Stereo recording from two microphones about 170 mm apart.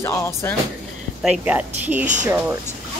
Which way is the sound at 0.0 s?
15° left (ahead or behind).